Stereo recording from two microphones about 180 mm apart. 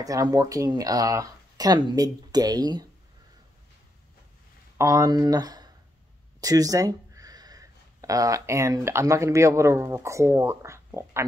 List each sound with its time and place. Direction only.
0.0 s speech: 20° right (ahead or behind)
4.7 s speech: 20° right (ahead or behind)